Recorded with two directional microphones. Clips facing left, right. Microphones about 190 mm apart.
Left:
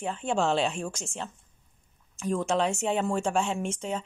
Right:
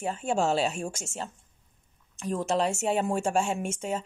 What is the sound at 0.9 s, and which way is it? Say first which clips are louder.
Speech: even; 45° right (ahead or behind).